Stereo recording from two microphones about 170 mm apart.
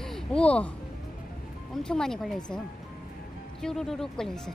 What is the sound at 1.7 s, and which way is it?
Speech, 5° left (ahead or behind).